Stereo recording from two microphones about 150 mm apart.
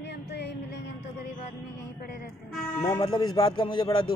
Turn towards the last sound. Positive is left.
turn(degrees=25)  # may be behind; listen again after turning